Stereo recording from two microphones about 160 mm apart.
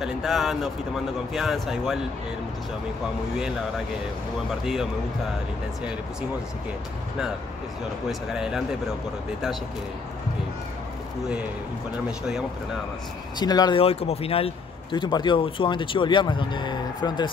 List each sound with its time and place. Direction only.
0.0 s speech: centre (ahead or behind)
8.1 s speech: 5° right (ahead or behind)
13.4 s speech: 25° left (ahead or behind)